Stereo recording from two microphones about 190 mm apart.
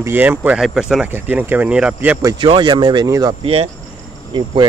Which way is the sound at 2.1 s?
20° right (ahead or behind).